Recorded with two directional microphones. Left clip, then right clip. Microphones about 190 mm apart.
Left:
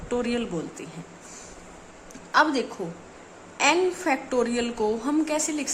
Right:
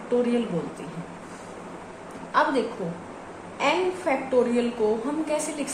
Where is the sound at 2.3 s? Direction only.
30° left (ahead or behind).